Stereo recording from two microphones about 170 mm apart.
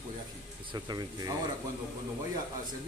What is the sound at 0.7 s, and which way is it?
Speech, 25° right (ahead or behind).